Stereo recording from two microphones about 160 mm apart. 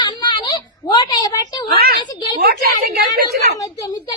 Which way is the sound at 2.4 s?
70° right (ahead or behind).